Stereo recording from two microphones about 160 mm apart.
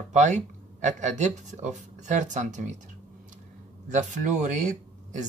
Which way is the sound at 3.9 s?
50° right (ahead or behind).